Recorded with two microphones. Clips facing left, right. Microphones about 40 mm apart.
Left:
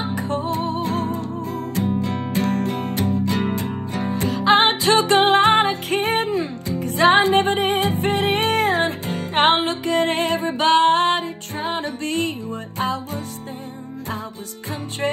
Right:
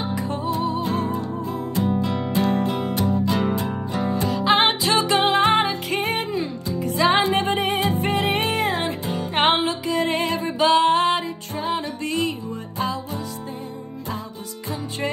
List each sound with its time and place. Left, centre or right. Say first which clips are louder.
0.0 s music: left 2 dB; left
9.3 s music: left 2 dB; left